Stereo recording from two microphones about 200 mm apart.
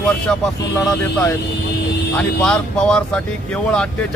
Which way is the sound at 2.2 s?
5° left (ahead or behind).